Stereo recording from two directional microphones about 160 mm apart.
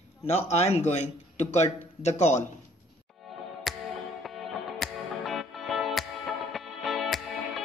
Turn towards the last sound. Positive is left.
turn(degrees=0)  # may be behind; listen again after turning